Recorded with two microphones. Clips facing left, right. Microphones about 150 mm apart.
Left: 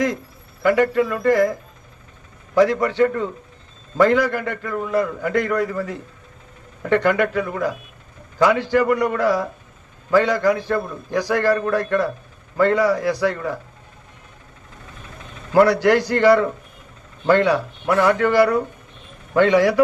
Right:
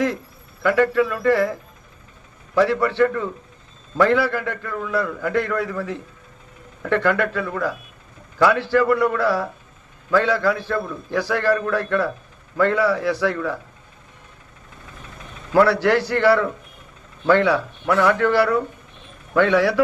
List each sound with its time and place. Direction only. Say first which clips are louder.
1.0 s a man's voice: left 2 dB; 15° left (ahead or behind)
2.6 s a man's voice: left 1 dB; 15° left (ahead or behind)
15.5 s a man's voice: left 2 dB; 15° left (ahead or behind)